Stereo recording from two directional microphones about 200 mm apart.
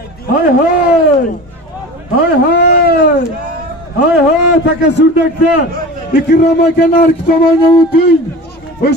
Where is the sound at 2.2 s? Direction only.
50° left (ahead or behind).